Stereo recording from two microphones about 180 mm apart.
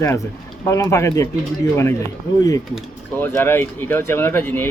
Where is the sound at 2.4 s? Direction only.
20° left (ahead or behind).